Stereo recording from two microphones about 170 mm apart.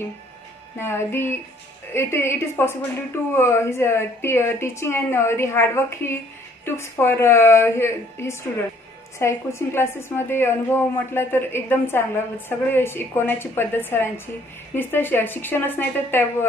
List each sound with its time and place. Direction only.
0.7 s a woman's voice: 15° left (ahead or behind)